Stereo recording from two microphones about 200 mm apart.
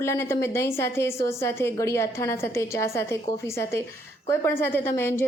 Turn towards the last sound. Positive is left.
turn(degrees=10)  # may be behind; listen again after turning